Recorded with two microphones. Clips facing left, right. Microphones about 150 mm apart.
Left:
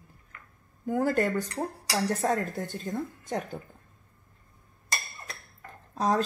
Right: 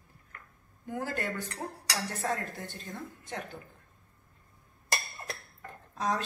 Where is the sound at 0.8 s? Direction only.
45° left (ahead or behind).